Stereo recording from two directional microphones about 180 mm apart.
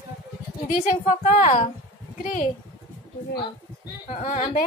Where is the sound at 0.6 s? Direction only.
50° left (ahead or behind).